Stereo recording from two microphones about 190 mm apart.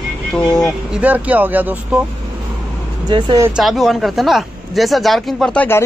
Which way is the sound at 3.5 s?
Centre (ahead or behind).